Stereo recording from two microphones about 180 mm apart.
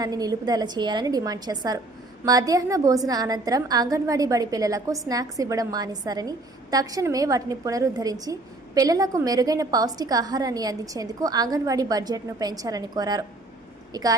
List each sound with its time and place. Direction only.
0.0 s a woman's voice: 20° right (ahead or behind)